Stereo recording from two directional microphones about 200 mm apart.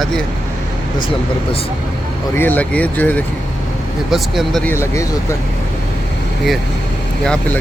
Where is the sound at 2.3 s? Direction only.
10° left (ahead or behind).